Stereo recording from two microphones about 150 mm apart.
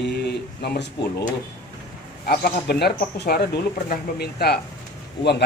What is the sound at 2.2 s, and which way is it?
Speech, 90° left.